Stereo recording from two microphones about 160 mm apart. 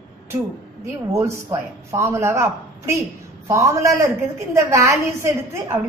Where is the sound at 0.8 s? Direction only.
20° right (ahead or behind).